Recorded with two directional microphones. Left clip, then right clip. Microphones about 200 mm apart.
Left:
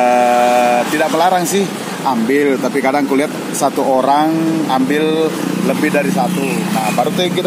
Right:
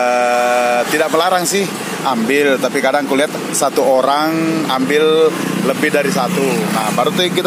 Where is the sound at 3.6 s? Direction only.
25° right (ahead or behind).